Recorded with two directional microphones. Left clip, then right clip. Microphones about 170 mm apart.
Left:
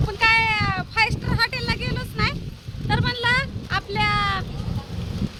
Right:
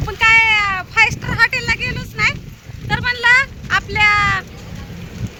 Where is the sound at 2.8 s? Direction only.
Centre (ahead or behind).